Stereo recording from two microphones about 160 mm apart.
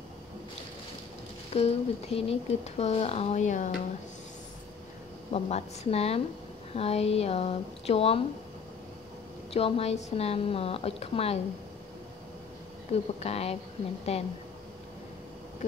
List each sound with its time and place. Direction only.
1.5 s speech: 40° left (ahead or behind)
5.3 s speech: 40° left (ahead or behind)
9.5 s speech: 40° left (ahead or behind)
12.9 s speech: 40° left (ahead or behind)